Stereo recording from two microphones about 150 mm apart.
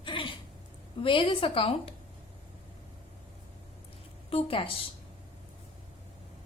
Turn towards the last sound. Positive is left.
turn(degrees=40)  # may be behind; listen again after turning